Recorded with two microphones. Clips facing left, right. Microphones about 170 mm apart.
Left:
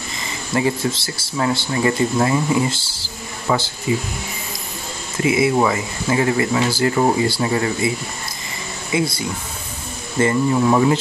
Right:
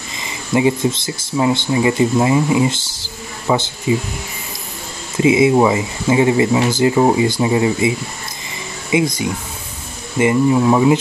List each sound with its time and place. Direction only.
0.2 s speech: 20° right (ahead or behind)
5.1 s speech: 20° right (ahead or behind)
8.9 s speech: 15° right (ahead or behind)